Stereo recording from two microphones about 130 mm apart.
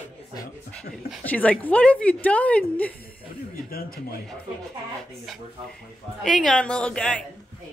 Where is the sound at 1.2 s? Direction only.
10° left (ahead or behind).